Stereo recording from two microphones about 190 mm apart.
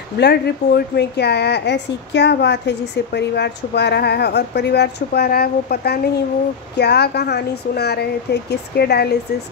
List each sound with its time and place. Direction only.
0.2 s speech: 60° left (ahead or behind)